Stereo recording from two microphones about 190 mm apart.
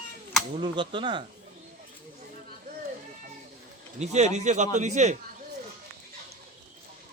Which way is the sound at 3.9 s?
35° right (ahead or behind).